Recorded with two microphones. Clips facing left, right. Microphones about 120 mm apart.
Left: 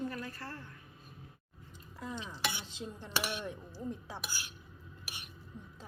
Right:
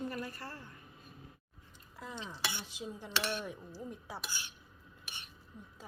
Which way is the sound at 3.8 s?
10° right (ahead or behind).